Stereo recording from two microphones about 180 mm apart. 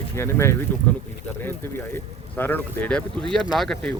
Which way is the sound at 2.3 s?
10° left (ahead or behind).